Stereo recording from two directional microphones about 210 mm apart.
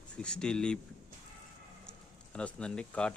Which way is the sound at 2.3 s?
5° left (ahead or behind).